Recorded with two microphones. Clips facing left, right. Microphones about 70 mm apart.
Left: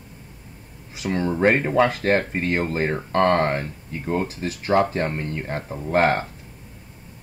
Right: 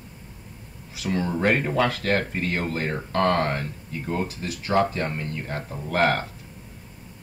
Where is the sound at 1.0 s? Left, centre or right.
Left.